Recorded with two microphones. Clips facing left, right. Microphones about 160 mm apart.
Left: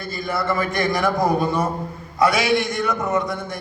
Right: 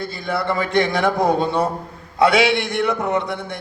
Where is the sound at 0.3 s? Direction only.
65° right (ahead or behind).